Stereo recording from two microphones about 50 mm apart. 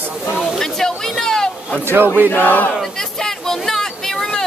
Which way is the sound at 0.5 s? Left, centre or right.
Centre.